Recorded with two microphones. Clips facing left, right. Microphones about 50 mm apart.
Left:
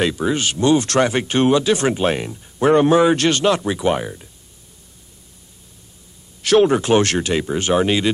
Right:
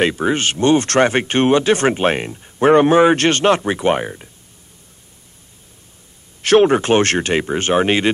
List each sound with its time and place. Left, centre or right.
0.0 s speech: right
6.4 s speech: right